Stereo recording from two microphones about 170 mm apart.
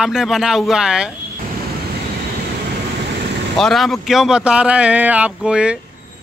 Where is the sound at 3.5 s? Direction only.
Centre (ahead or behind).